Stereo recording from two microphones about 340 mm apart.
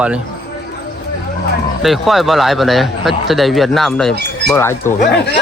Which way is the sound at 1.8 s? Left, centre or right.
Centre.